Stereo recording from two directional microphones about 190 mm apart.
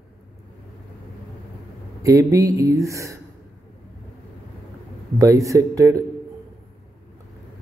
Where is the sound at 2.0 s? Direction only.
15° right (ahead or behind).